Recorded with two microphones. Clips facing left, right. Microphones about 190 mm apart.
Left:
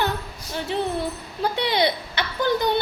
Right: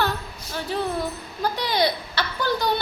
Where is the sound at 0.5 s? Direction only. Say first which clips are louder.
Left 1 dB; 25° left (ahead or behind).